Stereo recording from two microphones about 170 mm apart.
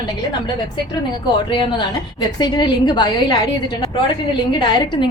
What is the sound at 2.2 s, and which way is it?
A woman's voice, 25° left (ahead or behind).